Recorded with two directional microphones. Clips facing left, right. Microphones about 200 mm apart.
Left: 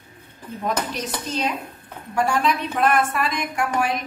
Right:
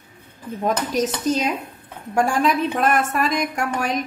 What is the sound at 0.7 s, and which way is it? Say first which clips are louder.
A woman's voice: right 5 dB; 45° right (ahead or behind).